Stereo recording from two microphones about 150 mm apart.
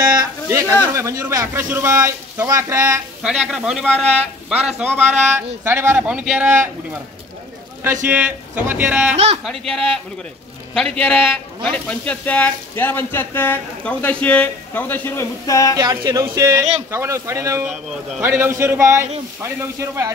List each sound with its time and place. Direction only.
0.5 s a man's voice: 20° right (ahead or behind)
3.2 s a man's voice: 5° right (ahead or behind)
7.8 s a man's voice: 15° right (ahead or behind)
9.1 s speech: 45° right (ahead or behind)
9.4 s speech: centre (ahead or behind); by 15.8 s 20° left (ahead or behind)
15.8 s speech: 25° right (ahead or behind)
17.6 s speech: 5° right (ahead or behind)
18.3 s a man's voice: 20° right (ahead or behind)